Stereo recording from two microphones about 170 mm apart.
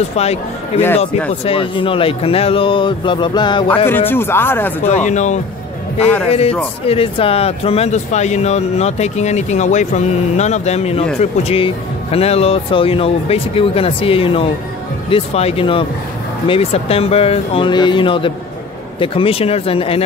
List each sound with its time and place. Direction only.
0.2 s speech: 40° left (ahead or behind)
3.6 s speech: 10° left (ahead or behind)
4.8 s speech: 45° left (ahead or behind)
6.9 s speech: 35° left (ahead or behind)